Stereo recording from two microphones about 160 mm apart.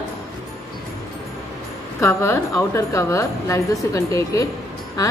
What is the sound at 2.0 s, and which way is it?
Speech, 15° left (ahead or behind).